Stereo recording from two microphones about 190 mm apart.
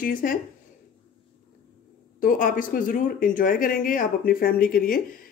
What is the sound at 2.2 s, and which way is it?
Speech, 45° left (ahead or behind).